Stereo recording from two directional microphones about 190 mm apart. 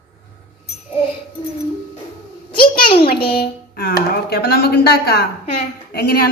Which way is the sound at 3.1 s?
55° left (ahead or behind).